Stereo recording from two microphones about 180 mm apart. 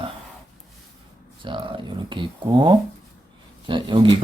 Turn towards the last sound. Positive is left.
turn(degrees=-25)  # may be behind; listen again after turning